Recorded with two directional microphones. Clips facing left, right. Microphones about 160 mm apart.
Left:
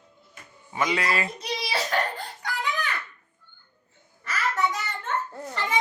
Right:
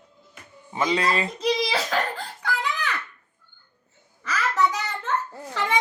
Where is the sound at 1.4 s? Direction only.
90° right.